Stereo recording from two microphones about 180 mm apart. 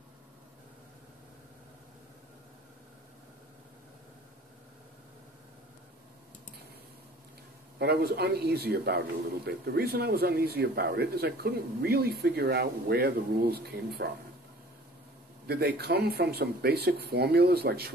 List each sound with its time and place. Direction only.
7.8 s speech: 60° right (ahead or behind)
15.4 s speech: 60° right (ahead or behind)